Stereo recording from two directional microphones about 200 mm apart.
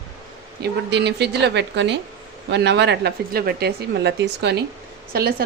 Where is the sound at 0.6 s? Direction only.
60° right (ahead or behind).